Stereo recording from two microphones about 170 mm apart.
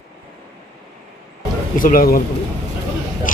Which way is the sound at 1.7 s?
55° left (ahead or behind).